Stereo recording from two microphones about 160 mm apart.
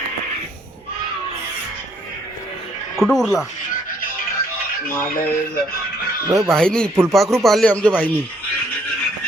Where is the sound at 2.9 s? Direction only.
Centre (ahead or behind).